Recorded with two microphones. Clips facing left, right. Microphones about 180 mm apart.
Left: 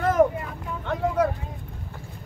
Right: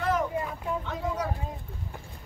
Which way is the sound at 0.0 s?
50° left (ahead or behind).